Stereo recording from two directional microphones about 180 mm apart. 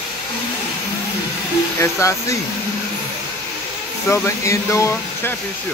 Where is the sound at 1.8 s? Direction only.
15° left (ahead or behind).